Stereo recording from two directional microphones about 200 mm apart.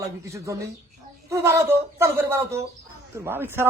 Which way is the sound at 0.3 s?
15° right (ahead or behind).